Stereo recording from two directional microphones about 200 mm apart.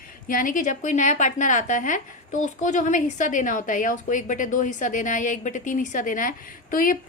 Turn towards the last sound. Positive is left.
turn(degrees=45)  # may be behind; listen again after turning